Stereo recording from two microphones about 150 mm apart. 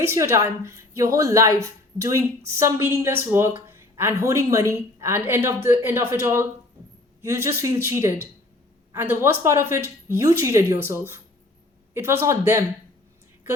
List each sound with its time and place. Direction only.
0.0 s a woman's voice: 15° right (ahead or behind)